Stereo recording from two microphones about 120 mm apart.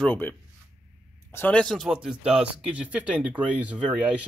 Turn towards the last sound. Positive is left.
turn(degrees=-10)  # may be behind; listen again after turning